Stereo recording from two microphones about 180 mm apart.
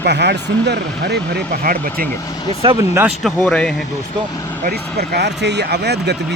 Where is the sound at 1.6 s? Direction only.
55° right (ahead or behind).